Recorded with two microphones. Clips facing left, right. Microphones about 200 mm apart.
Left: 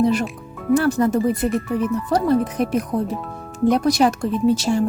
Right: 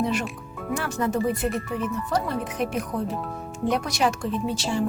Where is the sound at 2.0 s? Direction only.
35° left (ahead or behind).